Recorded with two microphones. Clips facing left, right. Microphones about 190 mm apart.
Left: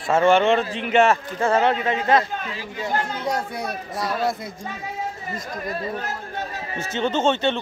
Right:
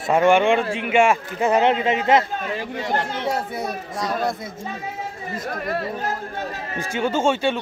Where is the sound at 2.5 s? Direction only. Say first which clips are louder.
Right 2 dB; 75° right (ahead or behind).